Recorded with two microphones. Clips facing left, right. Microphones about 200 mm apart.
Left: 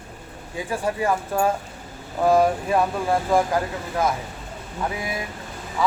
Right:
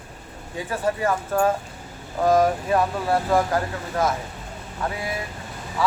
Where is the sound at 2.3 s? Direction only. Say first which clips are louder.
Even; 10° left (ahead or behind).